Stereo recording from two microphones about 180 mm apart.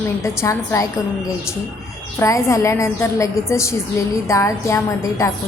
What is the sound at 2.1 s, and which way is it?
A woman's voice, 15° left (ahead or behind).